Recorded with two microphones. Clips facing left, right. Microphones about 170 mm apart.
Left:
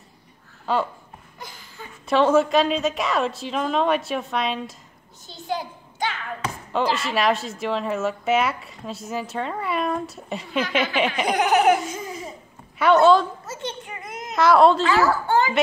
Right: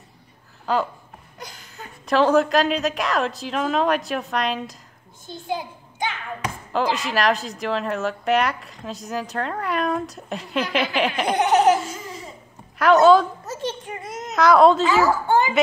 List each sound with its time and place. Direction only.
0.7 s speech: centre (ahead or behind)
2.0 s speech: centre (ahead or behind)
5.5 s a sound: 20° right (ahead or behind)
6.7 s speech: centre (ahead or behind)
11.3 s laughter: 30° right (ahead or behind)
11.8 s laughter: 20° left (ahead or behind)
12.7 s speech: centre (ahead or behind)
14.3 s speech: centre (ahead or behind)
15.0 s a woman's voice: 15° right (ahead or behind)